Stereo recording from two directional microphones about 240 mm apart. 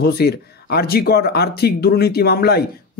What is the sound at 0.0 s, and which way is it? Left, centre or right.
Speech, left.